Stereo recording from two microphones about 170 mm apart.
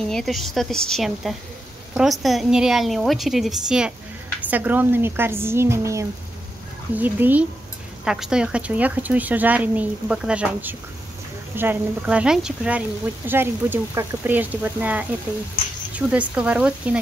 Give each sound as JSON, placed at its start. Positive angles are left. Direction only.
{"t": 0.1, "sound": "a woman's voice", "side_deg": 0}